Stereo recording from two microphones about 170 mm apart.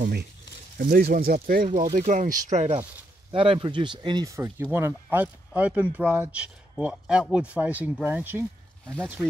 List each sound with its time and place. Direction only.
0.0 s speech: 70° right (ahead or behind)
0.7 s speech: 60° right (ahead or behind)
2.0 s speech: 50° right (ahead or behind)
3.3 s speech: 30° right (ahead or behind); by 8.9 s 10° right (ahead or behind)